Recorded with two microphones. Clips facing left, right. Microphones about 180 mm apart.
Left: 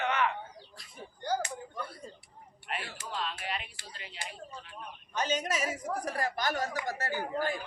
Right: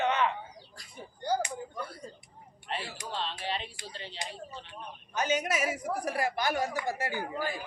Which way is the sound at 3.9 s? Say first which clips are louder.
Right 5 dB; 30° right (ahead or behind).